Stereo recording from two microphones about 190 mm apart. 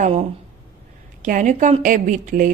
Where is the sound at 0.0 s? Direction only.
35° right (ahead or behind).